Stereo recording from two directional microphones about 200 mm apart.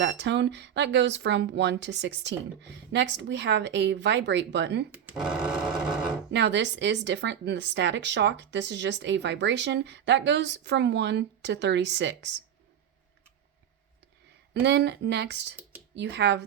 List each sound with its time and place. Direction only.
0.0 s speech: 60° right (ahead or behind)
4.9 s speech: 5° right (ahead or behind)
6.3 s speech: 60° right (ahead or behind)
14.6 s speech: 60° right (ahead or behind)